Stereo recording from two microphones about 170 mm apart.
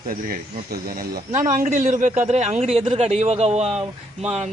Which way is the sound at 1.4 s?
45° right (ahead or behind).